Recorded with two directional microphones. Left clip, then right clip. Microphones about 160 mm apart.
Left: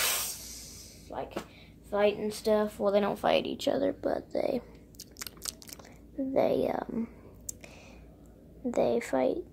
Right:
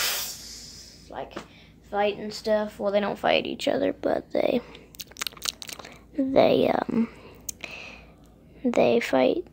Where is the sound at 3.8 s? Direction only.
70° right (ahead or behind).